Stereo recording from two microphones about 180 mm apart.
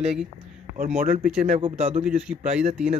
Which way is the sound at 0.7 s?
45° right (ahead or behind).